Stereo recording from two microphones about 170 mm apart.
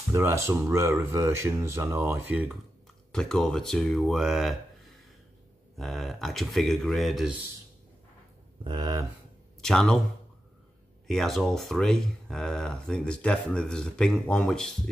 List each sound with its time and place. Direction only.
0.1 s speech: 15° right (ahead or behind)
3.1 s speech: 5° left (ahead or behind)
5.8 s speech: centre (ahead or behind)
8.6 s speech: 25° right (ahead or behind)
9.6 s speech: 5° left (ahead or behind)
11.1 s speech: centre (ahead or behind)